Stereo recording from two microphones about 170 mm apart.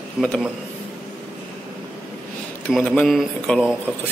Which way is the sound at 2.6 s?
5° left (ahead or behind).